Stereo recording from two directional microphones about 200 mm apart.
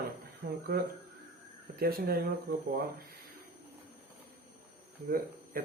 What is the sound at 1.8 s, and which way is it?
Speech, 50° right (ahead or behind).